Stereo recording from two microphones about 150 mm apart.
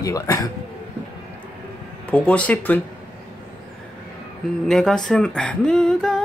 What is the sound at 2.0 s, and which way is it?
Speech, 10° left (ahead or behind).